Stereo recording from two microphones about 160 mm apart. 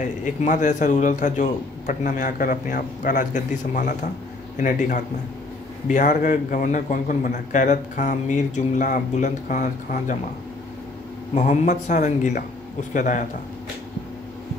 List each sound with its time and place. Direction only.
0.2 s a man's voice: 50° left (ahead or behind)
11.3 s a man's voice: 50° left (ahead or behind)